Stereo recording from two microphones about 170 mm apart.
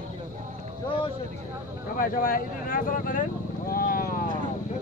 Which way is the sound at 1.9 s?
55° left (ahead or behind).